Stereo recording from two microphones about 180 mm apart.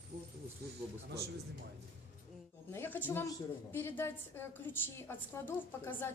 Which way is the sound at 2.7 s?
10° left (ahead or behind).